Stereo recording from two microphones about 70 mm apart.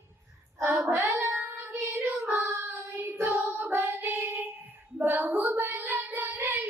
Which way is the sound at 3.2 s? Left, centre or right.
Right.